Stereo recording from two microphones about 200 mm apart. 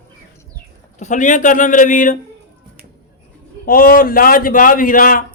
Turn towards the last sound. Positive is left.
turn(degrees=45)  # may be behind; listen again after turning